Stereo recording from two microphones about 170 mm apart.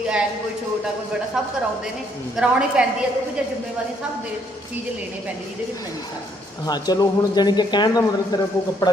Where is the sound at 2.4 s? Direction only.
5° right (ahead or behind).